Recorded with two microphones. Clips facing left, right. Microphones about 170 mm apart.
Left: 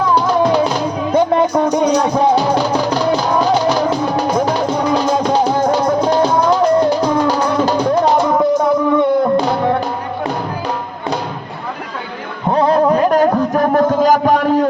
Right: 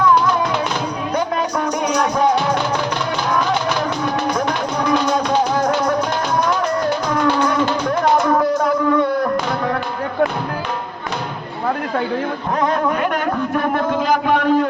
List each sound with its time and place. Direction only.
0.1 s music: 30° left (ahead or behind)
9.0 s a sound: 20° left (ahead or behind)
12.5 s music: 30° left (ahead or behind)